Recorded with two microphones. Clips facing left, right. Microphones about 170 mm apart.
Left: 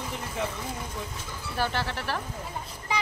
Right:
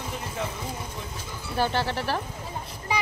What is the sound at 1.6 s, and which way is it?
Speech, 30° right (ahead or behind).